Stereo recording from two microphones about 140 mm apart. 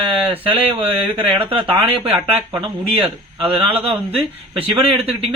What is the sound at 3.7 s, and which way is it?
Speech, 40° right (ahead or behind).